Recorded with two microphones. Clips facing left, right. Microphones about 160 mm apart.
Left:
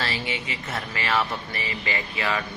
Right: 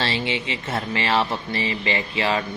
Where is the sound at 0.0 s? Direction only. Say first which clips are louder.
Right 5 dB; 25° right (ahead or behind).